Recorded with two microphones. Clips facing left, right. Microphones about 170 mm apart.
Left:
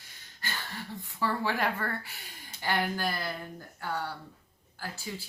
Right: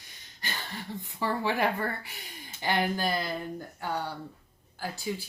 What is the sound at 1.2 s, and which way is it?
Speech, 15° right (ahead or behind).